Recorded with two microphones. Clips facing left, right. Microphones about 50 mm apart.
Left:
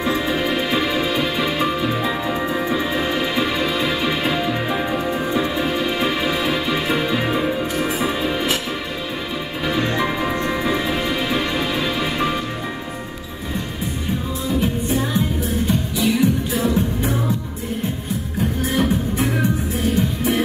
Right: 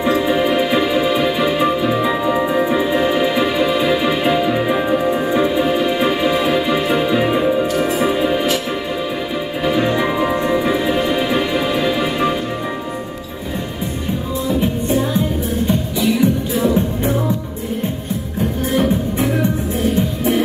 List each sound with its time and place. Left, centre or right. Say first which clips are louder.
0.0 s music: right 5 dB; centre
9.8 s music: right 4 dB; centre